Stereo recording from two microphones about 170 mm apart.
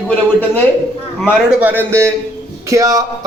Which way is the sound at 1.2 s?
10° right (ahead or behind).